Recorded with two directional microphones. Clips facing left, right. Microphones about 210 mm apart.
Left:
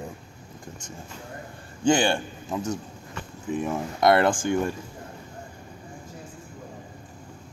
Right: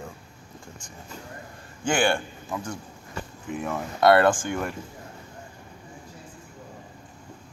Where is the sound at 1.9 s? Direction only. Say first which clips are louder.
Left 2 dB; 20° left (ahead or behind).